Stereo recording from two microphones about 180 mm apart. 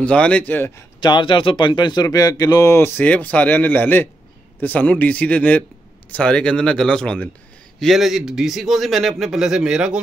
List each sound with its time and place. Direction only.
0.0 s speech: 5° left (ahead or behind)
1.0 s a man's voice: 25° left (ahead or behind); by 10.0 s 5° right (ahead or behind)